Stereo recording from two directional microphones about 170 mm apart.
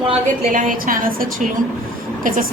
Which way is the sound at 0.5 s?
50° right (ahead or behind).